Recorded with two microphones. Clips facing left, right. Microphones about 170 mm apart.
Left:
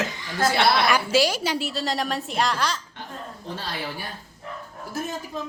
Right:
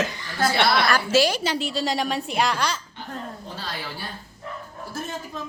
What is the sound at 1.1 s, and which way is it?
A woman's voice, 10° left (ahead or behind).